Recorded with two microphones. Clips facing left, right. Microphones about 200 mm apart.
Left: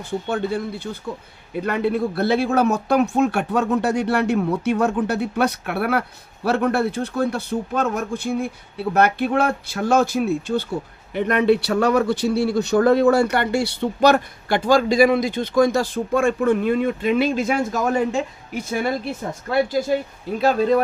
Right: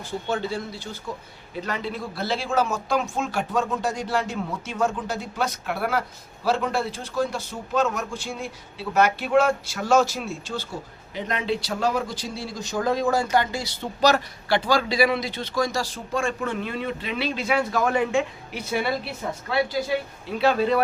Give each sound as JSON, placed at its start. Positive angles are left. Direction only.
{"t": 0.0, "sound": "a man's voice", "side_deg": 60}